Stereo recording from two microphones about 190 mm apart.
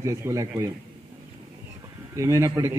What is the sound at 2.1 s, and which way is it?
Speech, 15° right (ahead or behind).